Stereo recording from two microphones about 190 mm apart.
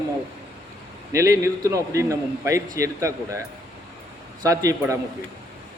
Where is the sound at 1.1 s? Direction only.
15° right (ahead or behind).